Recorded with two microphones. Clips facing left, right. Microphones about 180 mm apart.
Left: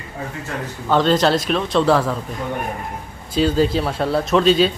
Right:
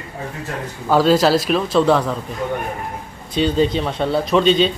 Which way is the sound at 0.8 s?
5° right (ahead or behind).